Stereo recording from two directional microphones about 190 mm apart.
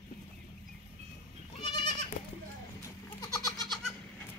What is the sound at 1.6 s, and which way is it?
Goat, 25° left (ahead or behind).